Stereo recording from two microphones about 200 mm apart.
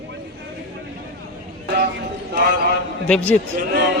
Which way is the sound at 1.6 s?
50° right (ahead or behind).